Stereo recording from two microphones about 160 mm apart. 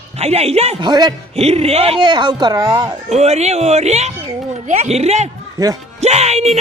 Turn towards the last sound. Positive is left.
turn(degrees=-45)  # may be behind; listen again after turning